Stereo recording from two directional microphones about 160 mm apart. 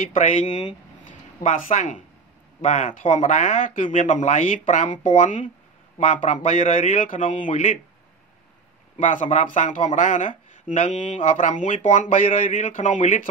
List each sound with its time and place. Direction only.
0.2 s speech: 40° left (ahead or behind)
5.0 s speech: 40° left (ahead or behind)
8.9 s speech: 50° left (ahead or behind)